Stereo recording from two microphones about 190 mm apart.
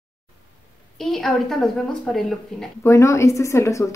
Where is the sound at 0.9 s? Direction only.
Centre (ahead or behind).